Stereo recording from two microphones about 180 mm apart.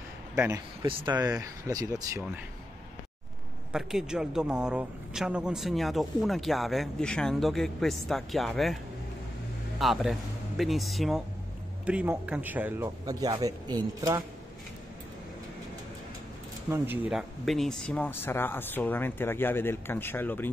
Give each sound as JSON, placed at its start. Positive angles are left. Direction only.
{"t": 0.8, "sound": "speech", "side_deg": -25}
{"t": 3.7, "sound": "speech", "side_deg": -5}
{"t": 9.8, "sound": "a man's voice", "side_deg": 0}
{"t": 16.6, "sound": "speech", "side_deg": -10}